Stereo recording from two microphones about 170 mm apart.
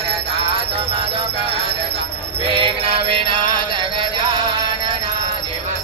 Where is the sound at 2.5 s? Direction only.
30° right (ahead or behind).